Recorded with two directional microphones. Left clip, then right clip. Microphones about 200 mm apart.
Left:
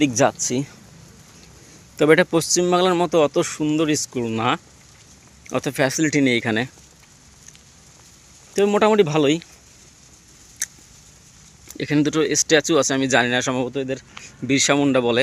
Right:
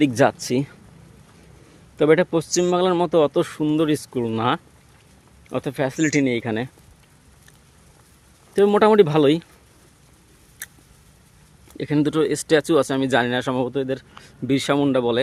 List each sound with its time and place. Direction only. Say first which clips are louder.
0.0 s speech: even; 25° right (ahead or behind)
2.0 s speech: left 1 dB; centre (ahead or behind)
5.5 s speech: left 3 dB; centre (ahead or behind)
8.5 s speech: right 2 dB; 20° right (ahead or behind)
11.7 s speech: left 1 dB; 5° right (ahead or behind)